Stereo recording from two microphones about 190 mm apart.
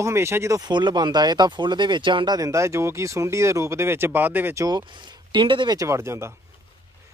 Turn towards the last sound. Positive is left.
turn(degrees=-15)  # may be behind; listen again after turning